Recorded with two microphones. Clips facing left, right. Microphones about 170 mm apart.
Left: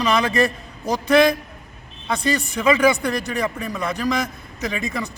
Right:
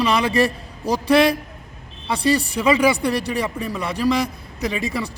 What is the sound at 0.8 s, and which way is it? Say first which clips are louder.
Speech: right 2 dB; 30° right (ahead or behind).